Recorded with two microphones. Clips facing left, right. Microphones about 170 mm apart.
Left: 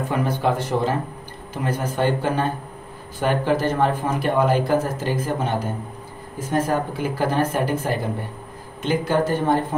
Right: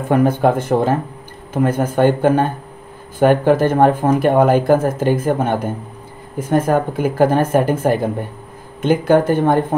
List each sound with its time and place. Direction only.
0.1 s speech: 50° right (ahead or behind)